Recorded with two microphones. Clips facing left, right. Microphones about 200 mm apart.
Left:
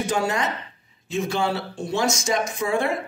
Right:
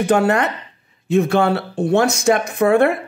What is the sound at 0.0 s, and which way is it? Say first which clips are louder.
Speech: right 8 dB; 60° right (ahead or behind).